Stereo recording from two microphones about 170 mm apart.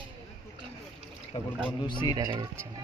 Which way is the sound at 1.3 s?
30° left (ahead or behind).